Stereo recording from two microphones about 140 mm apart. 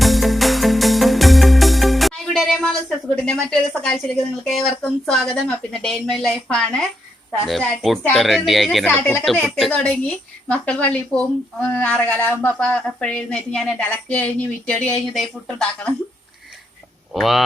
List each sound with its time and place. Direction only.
0.0 s music: centre (ahead or behind)
3.3 s speech: centre (ahead or behind); by 9.2 s 15° left (ahead or behind)
9.2 s speech: 5° left (ahead or behind)
17.2 s speech: centre (ahead or behind)